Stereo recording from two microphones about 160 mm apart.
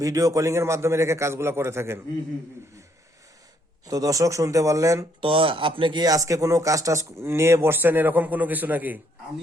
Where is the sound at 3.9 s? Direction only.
20° right (ahead or behind).